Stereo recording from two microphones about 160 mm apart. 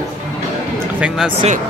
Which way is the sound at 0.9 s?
5° right (ahead or behind).